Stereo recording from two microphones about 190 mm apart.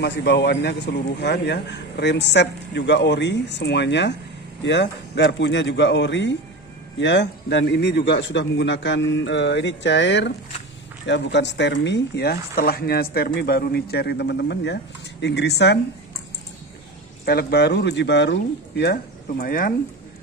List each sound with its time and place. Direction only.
0.0 s a man's voice: 60° left (ahead or behind)
17.2 s speech: 55° left (ahead or behind)